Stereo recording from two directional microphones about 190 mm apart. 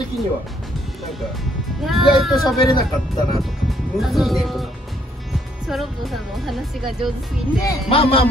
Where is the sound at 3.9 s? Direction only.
Centre (ahead or behind).